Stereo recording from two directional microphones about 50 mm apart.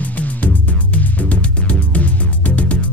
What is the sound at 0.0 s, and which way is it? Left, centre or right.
Music, left.